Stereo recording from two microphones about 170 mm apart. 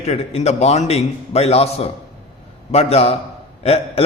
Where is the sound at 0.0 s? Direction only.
40° left (ahead or behind).